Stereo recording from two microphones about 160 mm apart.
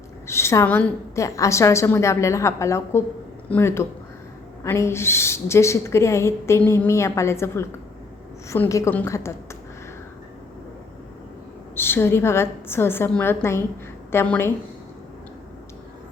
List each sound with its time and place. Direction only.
0.3 s a woman's voice: 15° left (ahead or behind)
11.7 s a woman's voice: 15° left (ahead or behind)